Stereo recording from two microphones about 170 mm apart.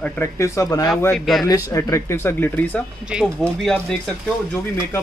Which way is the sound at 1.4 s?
20° left (ahead or behind).